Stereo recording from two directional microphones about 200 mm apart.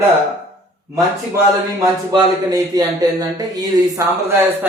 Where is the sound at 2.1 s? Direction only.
20° right (ahead or behind).